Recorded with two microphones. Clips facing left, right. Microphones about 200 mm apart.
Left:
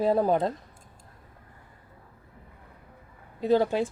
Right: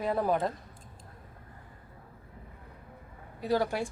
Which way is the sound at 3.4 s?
20° left (ahead or behind).